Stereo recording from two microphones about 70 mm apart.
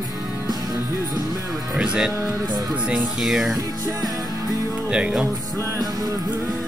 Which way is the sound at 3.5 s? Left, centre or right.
Right.